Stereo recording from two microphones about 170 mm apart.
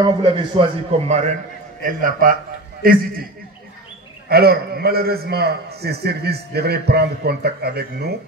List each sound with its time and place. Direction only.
0.0 s a man's voice: 30° right (ahead or behind)
1.9 s a man's voice: 50° right (ahead or behind)
4.3 s a man's voice: 65° right (ahead or behind)